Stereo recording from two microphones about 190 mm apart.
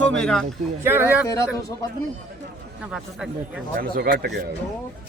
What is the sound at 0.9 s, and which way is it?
Speech, 10° right (ahead or behind).